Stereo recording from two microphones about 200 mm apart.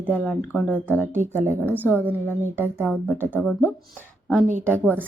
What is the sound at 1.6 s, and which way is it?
Speech, 10° left (ahead or behind).